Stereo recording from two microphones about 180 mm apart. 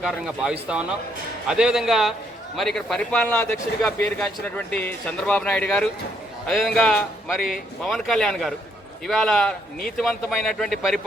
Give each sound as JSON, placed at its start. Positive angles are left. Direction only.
{"t": 0.0, "sound": "a man's voice", "side_deg": -5}